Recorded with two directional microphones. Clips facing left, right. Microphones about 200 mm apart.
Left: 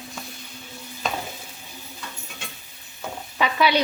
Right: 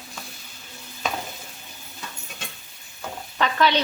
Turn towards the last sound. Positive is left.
turn(degrees=10)  # may be behind; listen again after turning